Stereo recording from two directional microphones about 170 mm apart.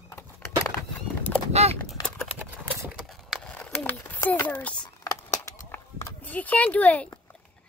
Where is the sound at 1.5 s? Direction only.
40° right (ahead or behind).